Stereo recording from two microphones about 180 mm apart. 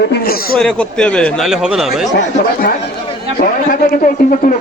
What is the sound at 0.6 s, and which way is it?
Speech, 5° left (ahead or behind).